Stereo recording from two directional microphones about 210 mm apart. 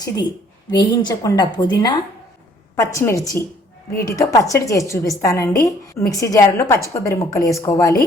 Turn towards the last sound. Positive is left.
turn(degrees=15)  # may be behind; listen again after turning